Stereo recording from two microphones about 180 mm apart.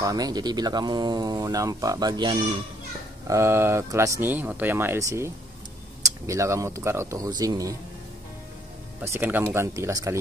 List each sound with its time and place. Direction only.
0.0 s speech: 20° right (ahead or behind)
9.0 s speech: 10° right (ahead or behind)